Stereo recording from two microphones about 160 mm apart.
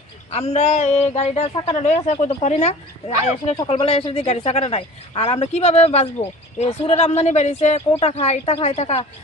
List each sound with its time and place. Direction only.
0.3 s a woman's voice: 40° left (ahead or behind)